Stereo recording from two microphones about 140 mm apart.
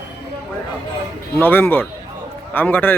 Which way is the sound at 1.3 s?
15° left (ahead or behind).